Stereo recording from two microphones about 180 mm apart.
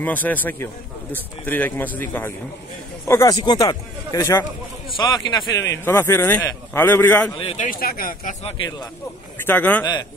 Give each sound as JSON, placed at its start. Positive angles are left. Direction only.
{"t": 0.0, "sound": "a man's voice", "side_deg": 10}
{"t": 7.3, "sound": "speech", "side_deg": 35}
{"t": 9.5, "sound": "a man's voice", "side_deg": 10}